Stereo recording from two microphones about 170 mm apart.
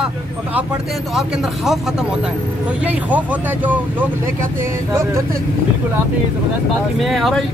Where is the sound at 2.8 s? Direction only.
10° right (ahead or behind).